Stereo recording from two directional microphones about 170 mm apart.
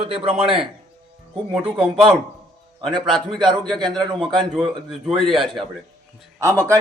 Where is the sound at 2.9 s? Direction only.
25° right (ahead or behind).